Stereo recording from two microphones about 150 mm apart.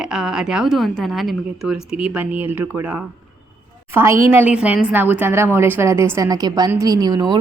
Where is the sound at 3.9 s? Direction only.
20° right (ahead or behind).